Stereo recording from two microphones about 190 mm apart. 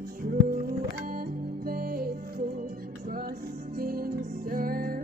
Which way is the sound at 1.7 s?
50° right (ahead or behind).